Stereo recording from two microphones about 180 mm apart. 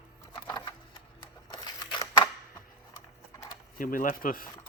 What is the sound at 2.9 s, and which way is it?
Clip-clop, 15° left (ahead or behind).